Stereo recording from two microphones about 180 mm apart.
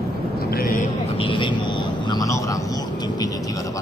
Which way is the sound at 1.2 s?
25° left (ahead or behind).